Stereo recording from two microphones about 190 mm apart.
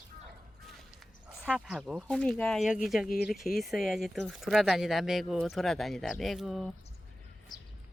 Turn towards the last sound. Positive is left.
turn(degrees=0)  # may be behind; listen again after turning